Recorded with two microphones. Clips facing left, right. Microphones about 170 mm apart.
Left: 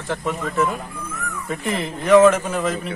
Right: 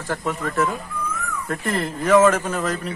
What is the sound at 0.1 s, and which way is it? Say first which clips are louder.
Speech: left 1 dB; centre (ahead or behind).